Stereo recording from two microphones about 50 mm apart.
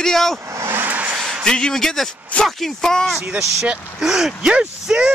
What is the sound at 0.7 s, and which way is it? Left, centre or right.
Vehicle, right.